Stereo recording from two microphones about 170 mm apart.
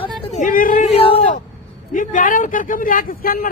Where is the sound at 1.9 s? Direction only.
50° left (ahead or behind).